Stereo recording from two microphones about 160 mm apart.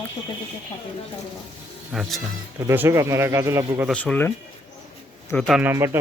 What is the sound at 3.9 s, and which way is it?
Speech, 10° left (ahead or behind).